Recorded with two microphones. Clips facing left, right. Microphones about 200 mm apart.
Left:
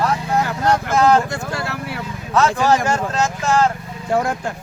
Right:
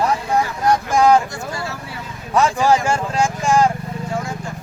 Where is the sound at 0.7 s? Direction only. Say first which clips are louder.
Right 1 dB; 10° right (ahead or behind).